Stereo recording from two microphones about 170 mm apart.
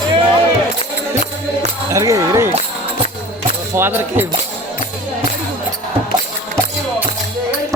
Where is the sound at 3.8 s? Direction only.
15° right (ahead or behind).